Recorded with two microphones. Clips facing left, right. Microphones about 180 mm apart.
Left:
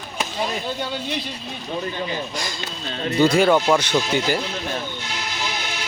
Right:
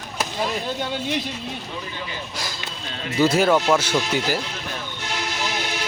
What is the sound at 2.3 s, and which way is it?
A man's voice, 5° right (ahead or behind).